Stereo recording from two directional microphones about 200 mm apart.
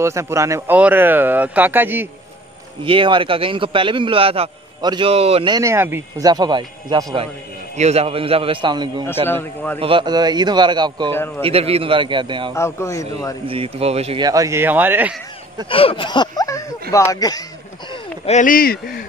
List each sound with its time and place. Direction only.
0.0 s speech: 15° right (ahead or behind)
2.8 s a man's voice: 25° right (ahead or behind)
7.7 s a man's voice: 35° right (ahead or behind)
9.0 s speech: 10° left (ahead or behind)
9.8 s a man's voice: 25° right (ahead or behind)
11.1 s speech: 10° left (ahead or behind)
11.4 s a man's voice: 30° right (ahead or behind)
12.5 s speech: 15° left (ahead or behind)
13.5 s speech: 30° right (ahead or behind)
14.2 s speech: 15° right (ahead or behind)
15.7 s a sound: 25° left (ahead or behind)
17.1 s a man's voice: 20° left (ahead or behind)
18.2 s speech: 40° left (ahead or behind)